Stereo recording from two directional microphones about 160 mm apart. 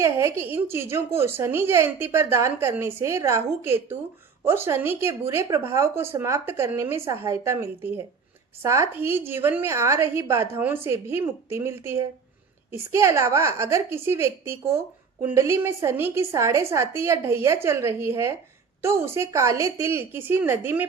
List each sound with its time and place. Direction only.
0.0 s speech: 15° right (ahead or behind)